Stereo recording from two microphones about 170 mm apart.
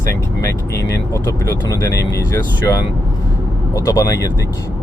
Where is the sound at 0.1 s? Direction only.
15° left (ahead or behind).